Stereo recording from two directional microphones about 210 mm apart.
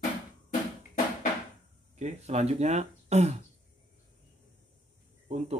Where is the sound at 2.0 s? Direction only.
30° right (ahead or behind).